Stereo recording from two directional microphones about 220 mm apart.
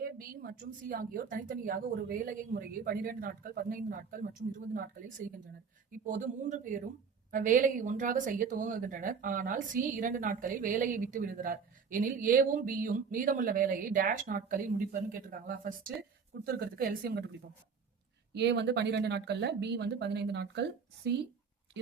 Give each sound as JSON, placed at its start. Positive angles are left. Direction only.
{"t": 0.0, "sound": "a woman's voice", "side_deg": -40}
{"t": 18.3, "sound": "speech", "side_deg": -50}